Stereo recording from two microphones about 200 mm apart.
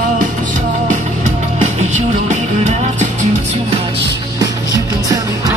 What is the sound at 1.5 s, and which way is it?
Music, 35° right (ahead or behind).